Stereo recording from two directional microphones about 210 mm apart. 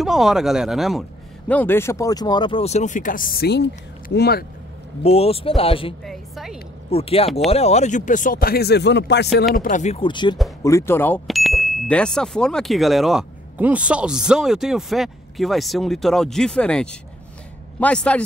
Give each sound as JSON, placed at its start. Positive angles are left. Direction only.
{"t": 0.0, "sound": "speech", "side_deg": 0}
{"t": 5.0, "sound": "speech", "side_deg": 30}
{"t": 6.0, "sound": "a sound", "side_deg": 0}
{"t": 6.9, "sound": "speech", "side_deg": 30}
{"t": 9.6, "sound": "speech", "side_deg": 35}